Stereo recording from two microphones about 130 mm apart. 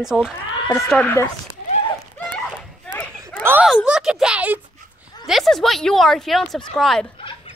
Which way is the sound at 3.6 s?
5° right (ahead or behind).